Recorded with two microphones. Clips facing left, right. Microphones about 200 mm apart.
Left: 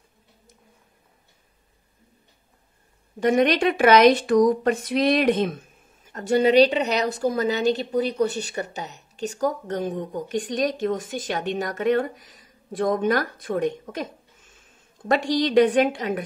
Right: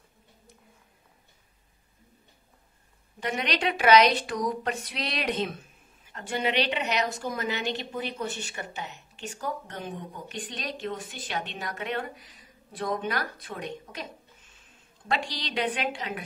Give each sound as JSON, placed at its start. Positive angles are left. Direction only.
{"t": 3.2, "sound": "speech", "side_deg": 45}
{"t": 15.0, "sound": "speech", "side_deg": 45}